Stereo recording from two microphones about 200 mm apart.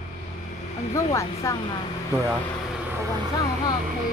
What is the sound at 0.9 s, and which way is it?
Speech, 15° left (ahead or behind).